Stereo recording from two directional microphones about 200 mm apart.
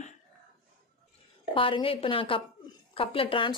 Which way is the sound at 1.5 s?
25° left (ahead or behind).